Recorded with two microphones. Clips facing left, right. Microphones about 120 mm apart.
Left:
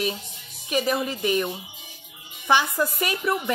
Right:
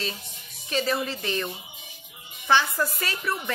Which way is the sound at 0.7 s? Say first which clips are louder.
Left 2 dB; 15° left (ahead or behind).